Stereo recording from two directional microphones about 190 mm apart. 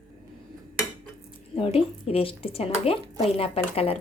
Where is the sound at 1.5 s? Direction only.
30° left (ahead or behind).